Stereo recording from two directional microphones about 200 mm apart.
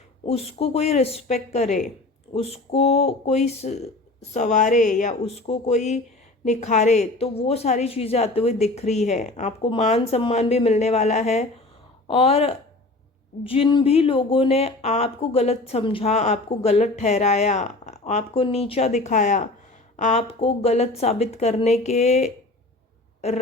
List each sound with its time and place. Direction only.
0.3 s a woman's voice: 30° left (ahead or behind)